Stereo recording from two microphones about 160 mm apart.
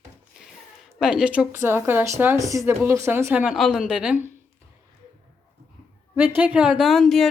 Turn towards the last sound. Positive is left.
turn(degrees=0)  # may be behind; listen again after turning